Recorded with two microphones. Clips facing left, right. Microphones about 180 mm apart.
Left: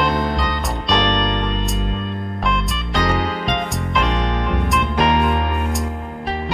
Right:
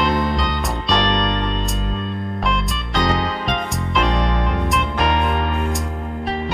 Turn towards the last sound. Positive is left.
turn(degrees=0)  # may be behind; listen again after turning